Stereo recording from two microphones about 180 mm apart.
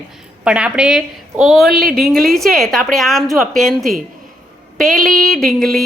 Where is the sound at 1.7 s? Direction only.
60° right (ahead or behind).